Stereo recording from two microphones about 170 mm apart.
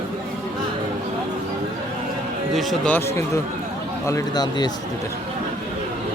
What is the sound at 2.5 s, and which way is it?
Speech, centre (ahead or behind).